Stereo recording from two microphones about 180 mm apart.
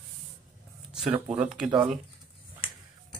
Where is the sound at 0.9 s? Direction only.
5° right (ahead or behind).